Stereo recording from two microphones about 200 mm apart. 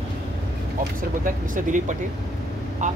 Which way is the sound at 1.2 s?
40° right (ahead or behind).